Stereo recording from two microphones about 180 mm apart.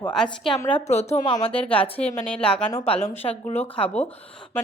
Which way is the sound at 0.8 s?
40° left (ahead or behind).